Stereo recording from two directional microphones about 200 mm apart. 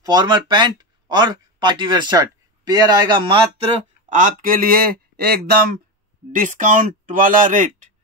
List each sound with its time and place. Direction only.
0.0 s speech: 20° right (ahead or behind)
4.2 s speech: 45° right (ahead or behind)
6.3 s speech: 40° right (ahead or behind)